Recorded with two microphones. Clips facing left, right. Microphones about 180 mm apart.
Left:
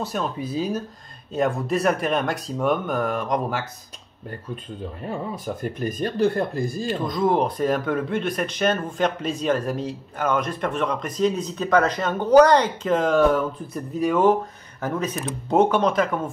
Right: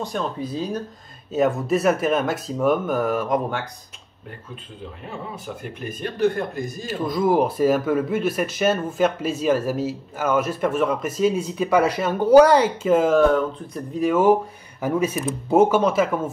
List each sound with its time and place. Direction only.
0.0 s speech: 5° left (ahead or behind)
1.3 s speech: centre (ahead or behind)
5.4 s speech: 40° left (ahead or behind)
6.9 s a man's voice: 5° right (ahead or behind)